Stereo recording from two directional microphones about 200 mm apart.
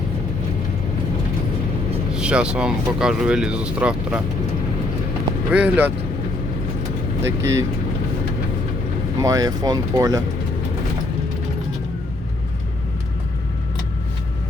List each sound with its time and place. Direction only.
2.1 s speech: 5° right (ahead or behind)
5.5 s speech: 5° right (ahead or behind)
7.2 s speech: 15° right (ahead or behind)
9.2 s speech: 15° right (ahead or behind)